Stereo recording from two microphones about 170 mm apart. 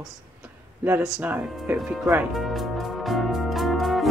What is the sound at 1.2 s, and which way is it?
Music, 10° right (ahead or behind).